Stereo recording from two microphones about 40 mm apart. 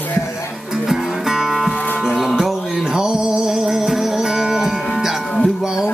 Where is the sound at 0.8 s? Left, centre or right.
Centre.